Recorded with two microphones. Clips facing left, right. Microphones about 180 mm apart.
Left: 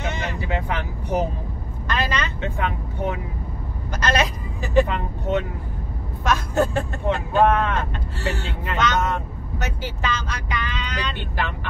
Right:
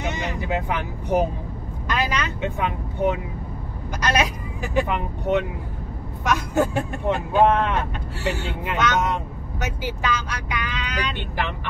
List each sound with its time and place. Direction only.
0.0 s vehicle: 15° right (ahead or behind)
1.9 s speech: 10° right (ahead or behind)
6.2 s speech: 10° right (ahead or behind)